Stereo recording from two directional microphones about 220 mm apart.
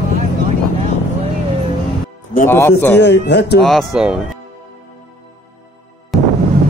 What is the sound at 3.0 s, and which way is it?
Speech, 50° left (ahead or behind).